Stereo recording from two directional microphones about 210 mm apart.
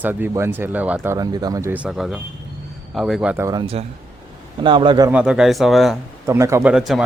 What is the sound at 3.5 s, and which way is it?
A man's voice, 25° right (ahead or behind).